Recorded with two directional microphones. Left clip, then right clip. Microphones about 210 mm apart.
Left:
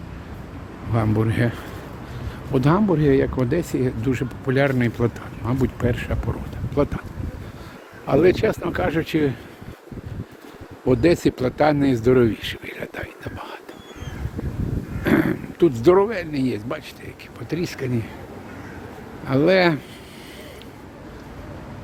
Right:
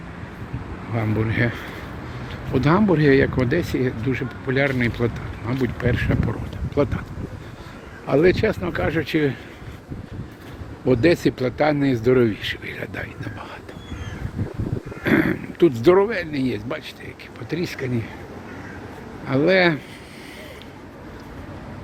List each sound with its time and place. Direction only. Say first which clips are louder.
0.9 s speech: left 1 dB; 20° left (ahead or behind)
2.8 s speech: right 2 dB; 5° left (ahead or behind)
8.0 s speech: even; 15° left (ahead or behind)
10.8 s speech: even; 15° left (ahead or behind)
15.0 s speech: even; 15° left (ahead or behind)
19.3 s speech: even; 15° left (ahead or behind)